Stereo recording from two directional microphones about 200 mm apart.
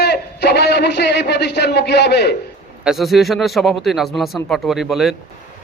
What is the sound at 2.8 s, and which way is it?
A man's voice, centre (ahead or behind).